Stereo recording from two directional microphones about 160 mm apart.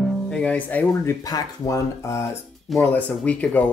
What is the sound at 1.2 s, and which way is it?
Speech, 25° left (ahead or behind).